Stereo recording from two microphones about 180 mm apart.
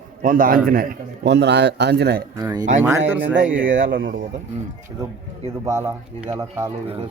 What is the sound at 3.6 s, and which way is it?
Speech, 50° right (ahead or behind).